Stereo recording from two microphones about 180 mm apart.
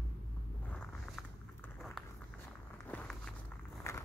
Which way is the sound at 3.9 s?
15° left (ahead or behind).